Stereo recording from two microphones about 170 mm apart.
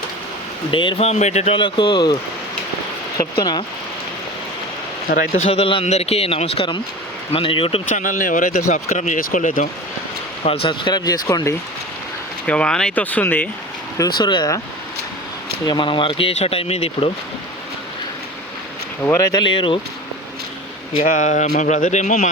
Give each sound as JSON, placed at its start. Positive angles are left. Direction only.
{"t": 0.7, "sound": "speech", "side_deg": 30}
{"t": 1.6, "sound": "speech", "side_deg": 25}
{"t": 5.0, "sound": "speech", "side_deg": 55}
{"t": 5.5, "sound": "speech", "side_deg": 35}
{"t": 7.9, "sound": "speech", "side_deg": 45}
{"t": 10.4, "sound": "speech", "side_deg": 35}
{"t": 12.5, "sound": "speech", "side_deg": 5}
{"t": 14.2, "sound": "speech", "side_deg": 25}
{"t": 15.6, "sound": "speech", "side_deg": 25}
{"t": 19.0, "sound": "speech", "side_deg": 20}
{"t": 21.0, "sound": "speech", "side_deg": 45}